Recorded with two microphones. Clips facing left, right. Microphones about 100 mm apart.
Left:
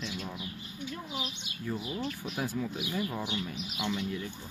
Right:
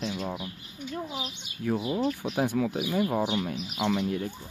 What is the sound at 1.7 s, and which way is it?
Speech, 60° right (ahead or behind).